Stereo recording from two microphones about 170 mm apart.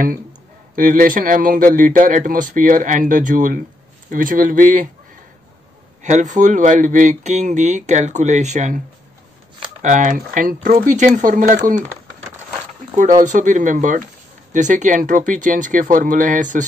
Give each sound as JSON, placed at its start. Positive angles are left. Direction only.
{"t": 0.7, "sound": "speech", "side_deg": -50}
{"t": 6.0, "sound": "speech", "side_deg": -45}
{"t": 12.9, "sound": "speech", "side_deg": -50}